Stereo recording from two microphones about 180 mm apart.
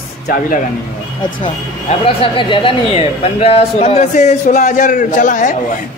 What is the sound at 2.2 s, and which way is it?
A man's voice, 25° left (ahead or behind).